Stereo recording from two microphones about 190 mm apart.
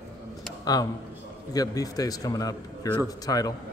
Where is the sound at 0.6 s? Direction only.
20° left (ahead or behind).